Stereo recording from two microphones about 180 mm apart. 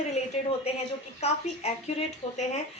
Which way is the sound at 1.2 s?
35° left (ahead or behind).